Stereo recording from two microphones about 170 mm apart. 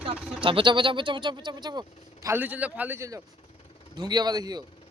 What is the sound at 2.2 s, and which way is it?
A man's voice, 10° right (ahead or behind).